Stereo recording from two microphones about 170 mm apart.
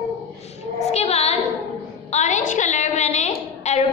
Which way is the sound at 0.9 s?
40° left (ahead or behind).